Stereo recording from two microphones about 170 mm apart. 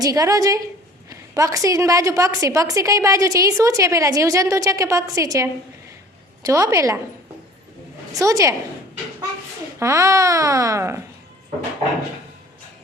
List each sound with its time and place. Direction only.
0.0 s a woman's voice: 20° right (ahead or behind)
8.2 s a woman's voice: 20° right (ahead or behind)
9.8 s speech: 15° right (ahead or behind)